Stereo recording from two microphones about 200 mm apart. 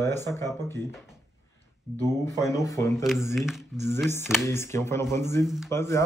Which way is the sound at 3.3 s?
Centre (ahead or behind).